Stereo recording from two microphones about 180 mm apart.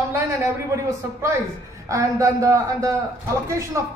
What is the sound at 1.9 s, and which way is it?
A man's voice, 15° right (ahead or behind).